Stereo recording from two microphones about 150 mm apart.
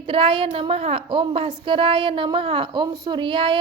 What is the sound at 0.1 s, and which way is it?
A woman's voice, 35° right (ahead or behind).